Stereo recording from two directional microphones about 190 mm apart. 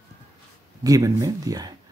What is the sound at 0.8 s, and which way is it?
Speech, 20° right (ahead or behind).